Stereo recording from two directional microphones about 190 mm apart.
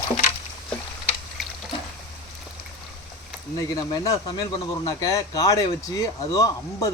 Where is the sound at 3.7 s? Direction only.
20° left (ahead or behind).